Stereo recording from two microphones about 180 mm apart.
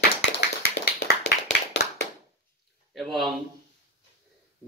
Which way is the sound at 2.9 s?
Centre (ahead or behind).